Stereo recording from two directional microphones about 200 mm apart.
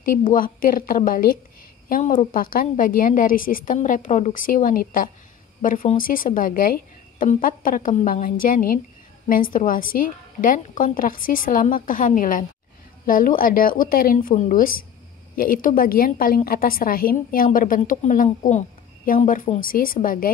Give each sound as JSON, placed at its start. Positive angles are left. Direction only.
{"t": 0.0, "sound": "a woman's voice", "side_deg": 45}